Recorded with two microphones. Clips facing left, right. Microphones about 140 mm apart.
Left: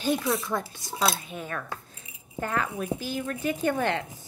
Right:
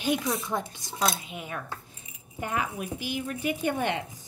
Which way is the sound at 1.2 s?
15° right (ahead or behind).